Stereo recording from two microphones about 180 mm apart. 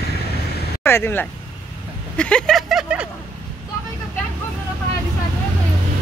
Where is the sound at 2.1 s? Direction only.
5° left (ahead or behind).